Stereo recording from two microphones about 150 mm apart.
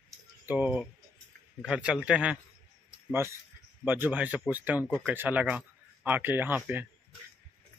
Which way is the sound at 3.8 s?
10° right (ahead or behind).